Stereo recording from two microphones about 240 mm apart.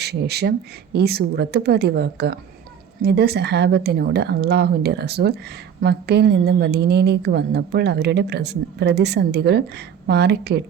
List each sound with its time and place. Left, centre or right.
0.0 s a woman's voice: right